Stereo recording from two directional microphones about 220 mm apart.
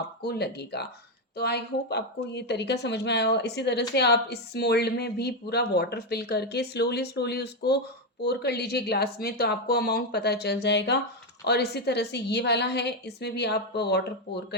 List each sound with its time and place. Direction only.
0.2 s a woman's voice: 45° left (ahead or behind)